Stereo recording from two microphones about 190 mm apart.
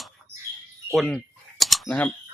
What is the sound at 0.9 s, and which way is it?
Typing, 5° left (ahead or behind).